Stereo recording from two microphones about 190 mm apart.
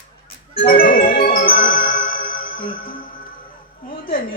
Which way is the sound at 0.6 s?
50° left (ahead or behind).